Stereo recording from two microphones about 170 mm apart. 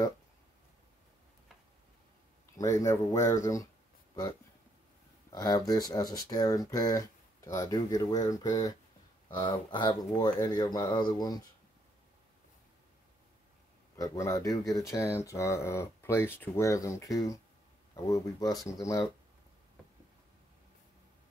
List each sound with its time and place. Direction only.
2.5 s speech: 20° left (ahead or behind)
5.3 s speech: 20° left (ahead or behind)
13.9 s speech: 20° left (ahead or behind)